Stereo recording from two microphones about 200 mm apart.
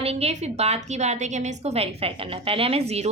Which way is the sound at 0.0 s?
30° right (ahead or behind).